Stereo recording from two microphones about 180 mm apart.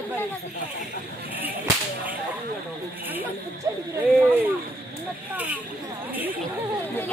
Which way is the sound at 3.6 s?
20° right (ahead or behind).